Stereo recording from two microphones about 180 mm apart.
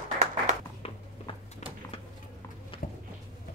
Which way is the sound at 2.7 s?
30° left (ahead or behind).